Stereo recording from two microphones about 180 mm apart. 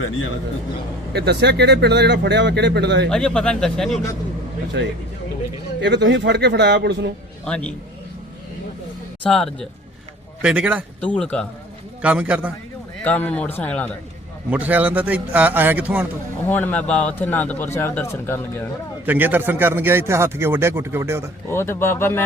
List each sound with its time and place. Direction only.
1.1 s speech: 65° right (ahead or behind)
3.1 s speech: 5° left (ahead or behind)
4.8 s speech: 75° right (ahead or behind)
7.4 s a man's voice: 5° left (ahead or behind)
9.2 s a man's voice: 5° left (ahead or behind)
11.0 s speech: 5° left (ahead or behind)
12.0 s a man's voice: 5° right (ahead or behind)
13.1 s a man's voice: 10° left (ahead or behind)
14.5 s a man's voice: 10° right (ahead or behind)
16.5 s a man's voice: 10° left (ahead or behind)
19.0 s a man's voice: 10° right (ahead or behind)
21.5 s a man's voice: 15° left (ahead or behind)